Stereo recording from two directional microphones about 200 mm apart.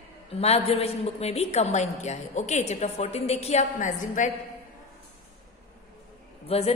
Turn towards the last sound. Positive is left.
turn(degrees=30)  # may be behind; listen again after turning